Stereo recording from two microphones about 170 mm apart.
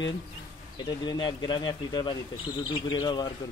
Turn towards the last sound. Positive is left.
turn(degrees=25)  # may be behind; listen again after turning